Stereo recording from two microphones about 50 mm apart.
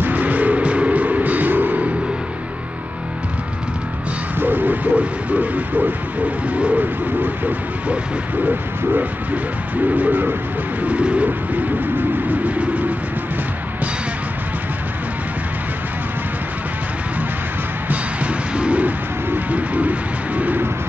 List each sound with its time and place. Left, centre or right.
0.0 s music: right
4.4 s speech: right
6.5 s bird: right
6.8 s speech: right
9.9 s speech: right
10.8 s bird: right
17.8 s bird: right